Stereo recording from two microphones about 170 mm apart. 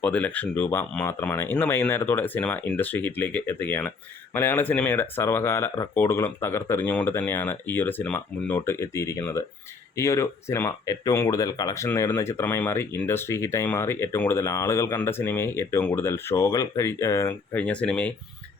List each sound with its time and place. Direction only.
0.0 s speech: 10° left (ahead or behind)